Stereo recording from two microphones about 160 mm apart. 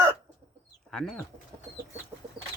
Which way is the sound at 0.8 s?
Centre (ahead or behind).